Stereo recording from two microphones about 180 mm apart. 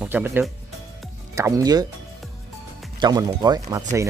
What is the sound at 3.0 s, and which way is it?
Speech, 20° right (ahead or behind).